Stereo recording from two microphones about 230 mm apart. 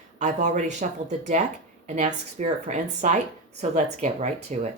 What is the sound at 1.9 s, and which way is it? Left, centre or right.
Speech, right.